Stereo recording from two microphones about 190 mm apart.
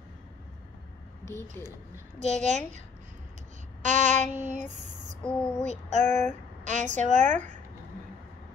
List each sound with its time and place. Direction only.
1.2 s speech: 10° left (ahead or behind)
2.1 s a woman's voice: 40° right (ahead or behind)
3.8 s child singing: 40° right (ahead or behind)
5.2 s speech: 5° left (ahead or behind)
5.7 s a woman's voice: 40° right (ahead or behind)